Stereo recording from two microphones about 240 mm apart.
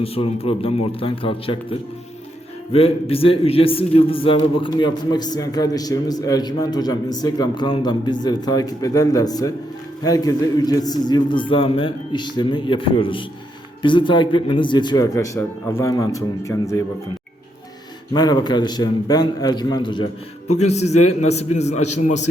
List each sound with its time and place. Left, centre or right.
0.0 s a man's voice: left
2.7 s a man's voice: left
18.1 s a man's voice: centre